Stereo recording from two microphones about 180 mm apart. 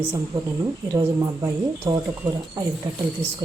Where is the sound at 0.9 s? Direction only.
20° right (ahead or behind).